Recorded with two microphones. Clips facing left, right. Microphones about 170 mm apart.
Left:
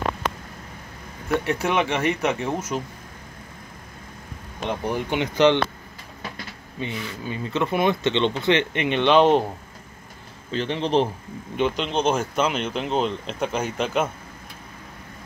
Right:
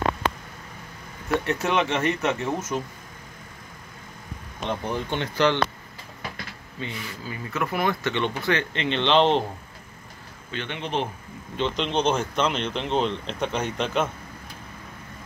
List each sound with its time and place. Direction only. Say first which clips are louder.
1.4 s speech: left 1 dB; 10° left (ahead or behind)
4.6 s speech: left 2 dB; 10° left (ahead or behind)
6.8 s speech: left 4 dB; 25° left (ahead or behind)
10.5 s a man's voice: left 7 dB; 35° left (ahead or behind)
11.7 s speech: left 1 dB; 5° left (ahead or behind)